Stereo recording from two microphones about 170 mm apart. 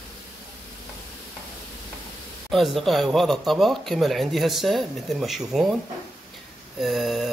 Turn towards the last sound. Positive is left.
turn(degrees=0)  # may be behind; listen again after turning